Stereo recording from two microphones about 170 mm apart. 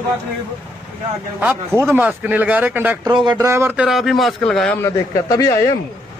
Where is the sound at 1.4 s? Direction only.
5° right (ahead or behind).